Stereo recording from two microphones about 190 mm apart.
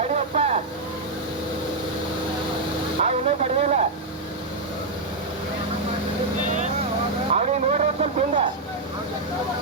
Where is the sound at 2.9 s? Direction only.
40° right (ahead or behind).